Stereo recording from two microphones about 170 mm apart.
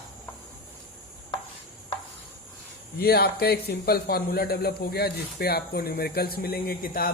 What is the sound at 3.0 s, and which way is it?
Speech, 65° left (ahead or behind).